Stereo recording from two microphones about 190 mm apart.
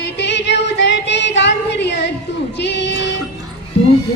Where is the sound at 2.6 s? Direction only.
70° left (ahead or behind).